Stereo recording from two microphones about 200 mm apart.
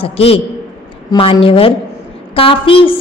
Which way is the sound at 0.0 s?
30° left (ahead or behind).